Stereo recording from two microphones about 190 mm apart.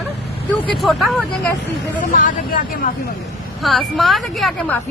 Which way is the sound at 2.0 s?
45° left (ahead or behind).